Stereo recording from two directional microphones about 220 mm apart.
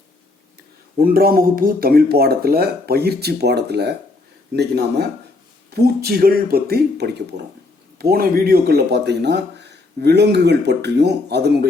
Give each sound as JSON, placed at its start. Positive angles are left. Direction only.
{"t": 0.9, "sound": "speech", "side_deg": -40}